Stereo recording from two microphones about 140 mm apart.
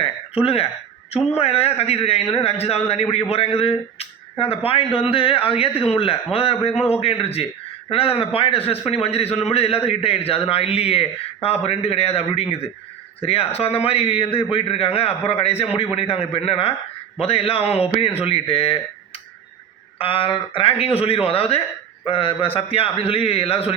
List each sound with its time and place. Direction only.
0.4 s a man's voice: 45° left (ahead or behind)
20.0 s a man's voice: 40° left (ahead or behind)